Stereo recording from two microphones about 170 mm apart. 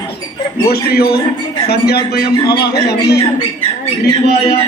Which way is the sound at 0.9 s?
65° left (ahead or behind).